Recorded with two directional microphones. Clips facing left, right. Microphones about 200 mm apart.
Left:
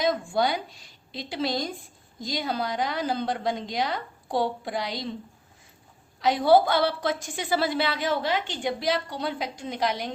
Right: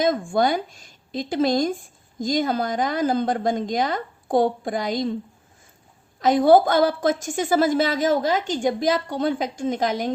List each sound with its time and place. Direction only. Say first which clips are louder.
0.0 s speech: right 4 dB; 50° right (ahead or behind)
6.1 s speech: right 4 dB; 45° right (ahead or behind)